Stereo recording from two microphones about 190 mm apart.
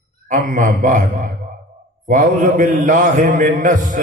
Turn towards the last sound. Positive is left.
turn(degrees=-40)  # may be behind; listen again after turning